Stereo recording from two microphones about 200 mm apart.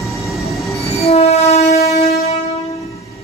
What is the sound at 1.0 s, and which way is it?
Train, 30° left (ahead or behind).